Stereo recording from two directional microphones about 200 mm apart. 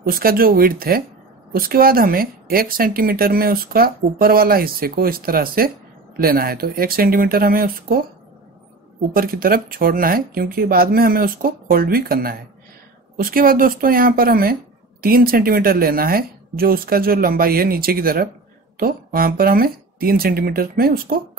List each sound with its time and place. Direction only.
0.0 s speech: 45° right (ahead or behind)
9.1 s speech: 45° right (ahead or behind)